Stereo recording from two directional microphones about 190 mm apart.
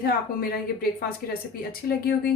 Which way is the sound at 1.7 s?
50° left (ahead or behind).